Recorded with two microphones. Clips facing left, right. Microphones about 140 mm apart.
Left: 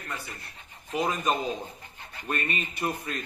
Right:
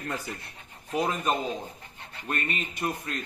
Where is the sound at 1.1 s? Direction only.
Centre (ahead or behind).